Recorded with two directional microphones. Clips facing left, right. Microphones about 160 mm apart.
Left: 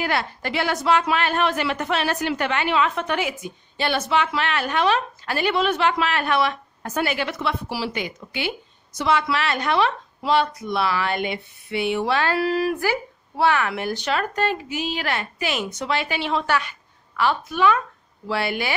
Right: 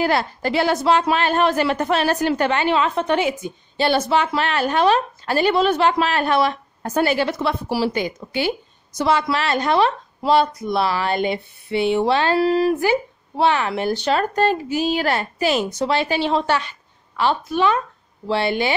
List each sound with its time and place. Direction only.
0.0 s a woman's voice: 35° right (ahead or behind)